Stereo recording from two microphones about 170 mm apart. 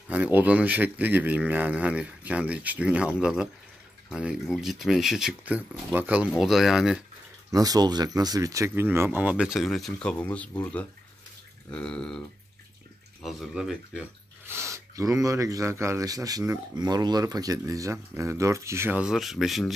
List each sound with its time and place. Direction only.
0.1 s speech: 10° right (ahead or behind)
7.5 s speech: 20° right (ahead or behind); by 12.2 s 5° left (ahead or behind)
13.2 s speech: centre (ahead or behind)
14.4 s speech: 15° right (ahead or behind)